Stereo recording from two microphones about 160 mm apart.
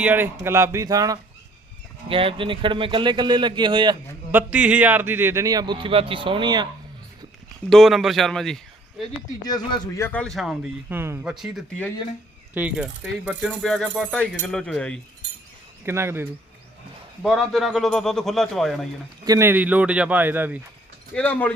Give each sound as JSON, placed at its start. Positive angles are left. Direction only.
{"t": 0.0, "sound": "speech", "side_deg": -10}
{"t": 2.0, "sound": "speech", "side_deg": -35}
{"t": 4.5, "sound": "speech", "side_deg": -5}
{"t": 7.7, "sound": "speech", "side_deg": 0}
{"t": 9.4, "sound": "a man's voice", "side_deg": 25}
{"t": 10.1, "sound": "a man's voice", "side_deg": 5}
{"t": 11.3, "sound": "a man's voice", "side_deg": -5}
{"t": 13.6, "sound": "a man's voice", "side_deg": 0}
{"t": 15.9, "sound": "speech", "side_deg": -15}
{"t": 17.2, "sound": "a man's voice", "side_deg": 0}
{"t": 19.2, "sound": "speech", "side_deg": -20}
{"t": 21.2, "sound": "speech", "side_deg": 10}